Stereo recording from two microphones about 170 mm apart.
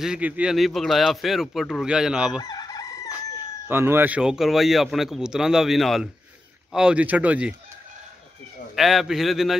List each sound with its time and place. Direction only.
0.0 s a man's voice: 5° right (ahead or behind)
2.4 s crowing: 25° left (ahead or behind)
3.6 s a man's voice: 15° right (ahead or behind)
8.7 s a man's voice: centre (ahead or behind)